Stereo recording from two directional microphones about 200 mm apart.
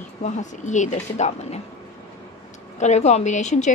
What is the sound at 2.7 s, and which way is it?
Speech, 35° left (ahead or behind).